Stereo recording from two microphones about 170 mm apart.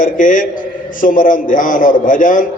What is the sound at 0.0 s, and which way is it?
A man's voice, 50° left (ahead or behind).